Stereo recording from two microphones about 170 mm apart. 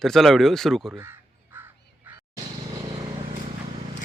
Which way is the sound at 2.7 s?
25° right (ahead or behind).